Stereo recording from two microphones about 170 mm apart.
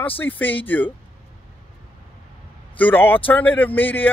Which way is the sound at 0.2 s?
10° left (ahead or behind).